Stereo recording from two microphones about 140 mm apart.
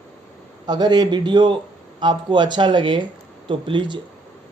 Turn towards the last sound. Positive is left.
turn(degrees=-35)  # may be behind; listen again after turning